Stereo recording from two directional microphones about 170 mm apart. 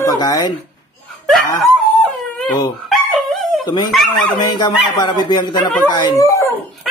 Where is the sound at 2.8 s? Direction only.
Centre (ahead or behind).